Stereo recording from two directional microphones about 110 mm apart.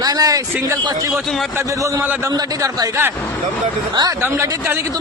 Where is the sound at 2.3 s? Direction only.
35° right (ahead or behind).